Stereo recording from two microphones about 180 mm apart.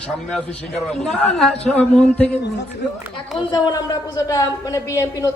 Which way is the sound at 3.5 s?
20° left (ahead or behind).